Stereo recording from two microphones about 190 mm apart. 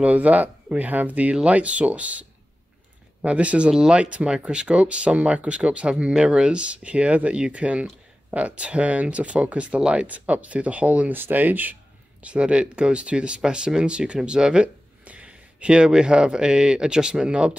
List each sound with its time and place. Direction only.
0.0 s speech: 5° right (ahead or behind)